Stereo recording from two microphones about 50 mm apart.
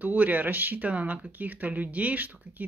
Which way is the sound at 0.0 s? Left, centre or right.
Right.